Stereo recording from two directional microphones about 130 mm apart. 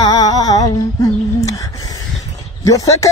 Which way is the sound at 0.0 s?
30° left (ahead or behind).